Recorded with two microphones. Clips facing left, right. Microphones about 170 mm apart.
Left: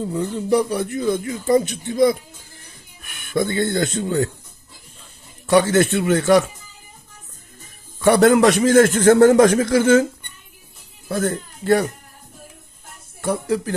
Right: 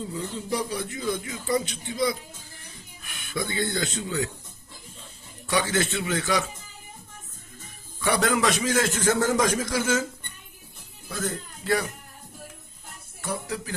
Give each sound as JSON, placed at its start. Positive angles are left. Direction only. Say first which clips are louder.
{"t": 0.0, "sound": "a man's voice", "louder": "left 9 dB", "side_deg": 60}
{"t": 5.5, "sound": "a man's voice", "louder": "left 10 dB", "side_deg": 55}
{"t": 8.0, "sound": "a man's voice", "louder": "left 10 dB", "side_deg": 55}
{"t": 11.1, "sound": "speech", "louder": "left 9 dB", "side_deg": 55}
{"t": 13.2, "sound": "a man's voice", "louder": "left 10 dB", "side_deg": 60}